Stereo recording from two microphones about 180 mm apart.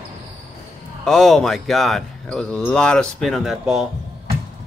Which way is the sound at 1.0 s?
Centre (ahead or behind).